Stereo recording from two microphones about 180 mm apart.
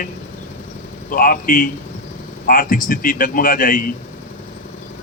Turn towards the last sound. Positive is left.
turn(degrees=50)  # may be behind; listen again after turning